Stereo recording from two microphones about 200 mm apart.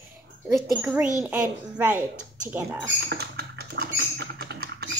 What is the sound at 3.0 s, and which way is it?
Typing, 55° right (ahead or behind).